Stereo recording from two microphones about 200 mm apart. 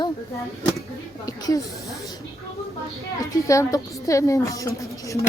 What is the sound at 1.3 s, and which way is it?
Speech, 15° left (ahead or behind).